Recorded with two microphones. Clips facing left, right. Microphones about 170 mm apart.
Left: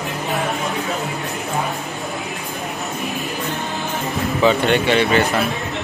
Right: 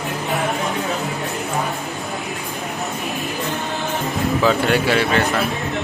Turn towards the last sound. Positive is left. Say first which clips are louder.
# left 1 dB
turn(degrees=-5)  # may be behind; listen again after turning